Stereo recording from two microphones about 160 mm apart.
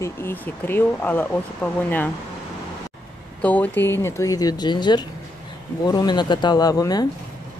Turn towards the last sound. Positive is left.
turn(degrees=25)  # may be behind; listen again after turning